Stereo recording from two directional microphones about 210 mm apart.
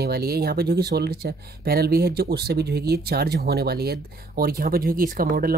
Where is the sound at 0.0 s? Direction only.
50° right (ahead or behind).